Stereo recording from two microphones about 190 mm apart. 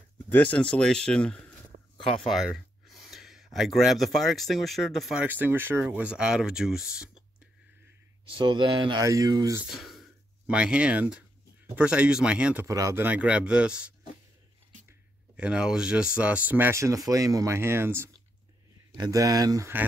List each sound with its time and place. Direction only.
0.3 s speech: 10° left (ahead or behind)
8.3 s speech: 25° right (ahead or behind)
9.7 s speech: centre (ahead or behind)
12.6 s speech: 15° right (ahead or behind)